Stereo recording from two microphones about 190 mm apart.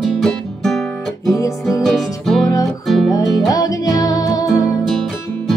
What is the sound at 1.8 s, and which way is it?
Music, centre (ahead or behind).